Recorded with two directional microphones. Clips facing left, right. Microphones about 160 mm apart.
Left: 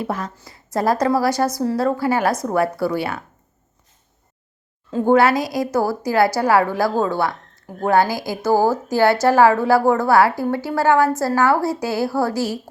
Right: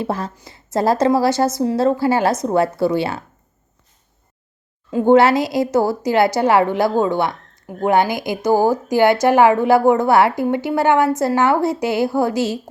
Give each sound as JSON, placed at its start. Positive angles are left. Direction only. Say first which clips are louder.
{"t": 0.0, "sound": "a woman's voice", "louder": "right 2 dB", "side_deg": -30}
{"t": 5.0, "sound": "a woman's voice", "louder": "right 3 dB", "side_deg": -25}